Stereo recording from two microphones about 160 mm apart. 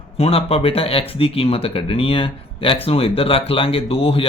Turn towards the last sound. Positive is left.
turn(degrees=35)  # may be behind; listen again after turning